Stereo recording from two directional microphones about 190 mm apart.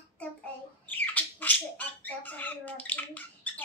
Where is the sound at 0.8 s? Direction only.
10° left (ahead or behind).